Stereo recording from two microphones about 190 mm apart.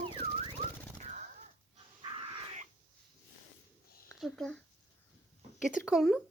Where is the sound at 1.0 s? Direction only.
40° right (ahead or behind).